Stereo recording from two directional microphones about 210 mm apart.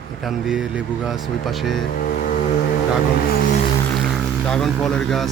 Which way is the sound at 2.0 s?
45° left (ahead or behind).